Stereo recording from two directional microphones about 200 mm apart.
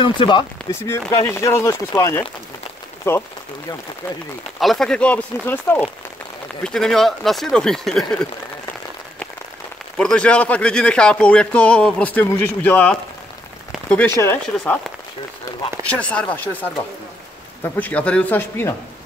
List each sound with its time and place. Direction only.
0.0 s speech: 25° left (ahead or behind)
4.6 s speech: centre (ahead or behind)
9.9 s speech: 5° left (ahead or behind)
15.9 s speech: 5° left (ahead or behind)